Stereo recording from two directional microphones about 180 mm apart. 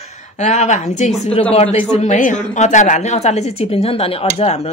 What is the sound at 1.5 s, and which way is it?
Speech, 35° left (ahead or behind).